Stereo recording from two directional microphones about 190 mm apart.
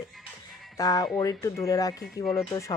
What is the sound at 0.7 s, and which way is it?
A woman's voice, 20° left (ahead or behind).